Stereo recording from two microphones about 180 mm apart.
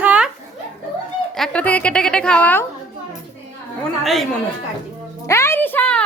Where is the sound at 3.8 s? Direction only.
Centre (ahead or behind).